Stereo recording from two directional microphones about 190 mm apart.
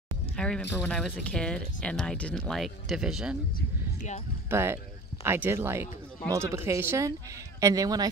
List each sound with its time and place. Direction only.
0.4 s speech: 5° left (ahead or behind)
4.5 s speech: 10° right (ahead or behind)